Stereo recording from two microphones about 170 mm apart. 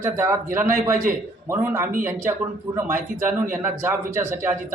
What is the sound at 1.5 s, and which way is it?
A man's voice, 15° right (ahead or behind).